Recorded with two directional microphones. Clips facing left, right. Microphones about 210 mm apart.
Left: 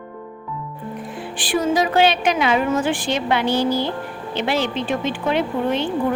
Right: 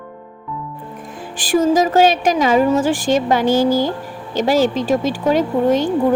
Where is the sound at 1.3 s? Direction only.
45° right (ahead or behind).